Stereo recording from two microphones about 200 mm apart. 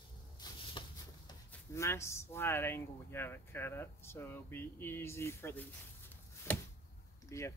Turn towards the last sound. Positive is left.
turn(degrees=15)  # may be behind; listen again after turning